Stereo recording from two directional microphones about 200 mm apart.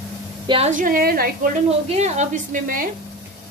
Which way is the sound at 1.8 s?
35° right (ahead or behind).